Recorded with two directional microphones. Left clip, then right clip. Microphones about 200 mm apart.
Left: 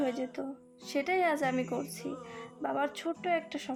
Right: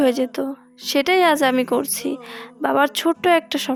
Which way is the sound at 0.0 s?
55° right (ahead or behind).